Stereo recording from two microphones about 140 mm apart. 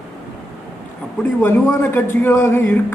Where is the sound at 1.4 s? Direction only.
15° left (ahead or behind).